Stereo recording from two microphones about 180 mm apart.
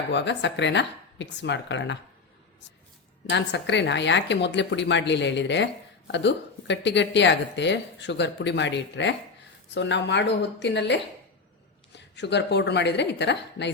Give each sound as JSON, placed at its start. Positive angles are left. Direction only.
{"t": 0.1, "sound": "speech", "side_deg": 75}
{"t": 3.2, "sound": "a woman's voice", "side_deg": 75}